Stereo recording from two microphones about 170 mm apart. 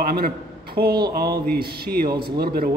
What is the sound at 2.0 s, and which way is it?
Speech, 30° right (ahead or behind).